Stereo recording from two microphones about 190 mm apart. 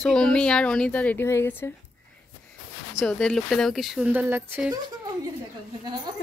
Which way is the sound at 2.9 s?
5° left (ahead or behind).